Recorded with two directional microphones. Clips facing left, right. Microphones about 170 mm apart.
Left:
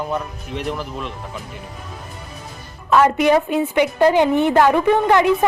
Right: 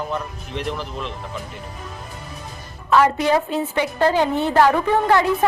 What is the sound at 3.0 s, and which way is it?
A woman's voice, 15° left (ahead or behind).